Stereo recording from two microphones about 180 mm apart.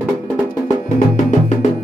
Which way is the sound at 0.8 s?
40° left (ahead or behind).